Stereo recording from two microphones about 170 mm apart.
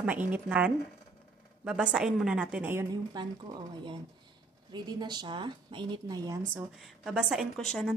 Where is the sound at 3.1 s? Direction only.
25° right (ahead or behind).